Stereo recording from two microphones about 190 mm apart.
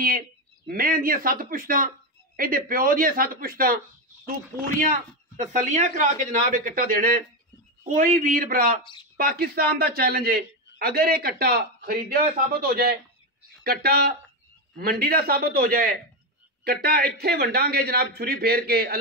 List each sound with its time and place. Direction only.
0.7 s a man's voice: 50° right (ahead or behind)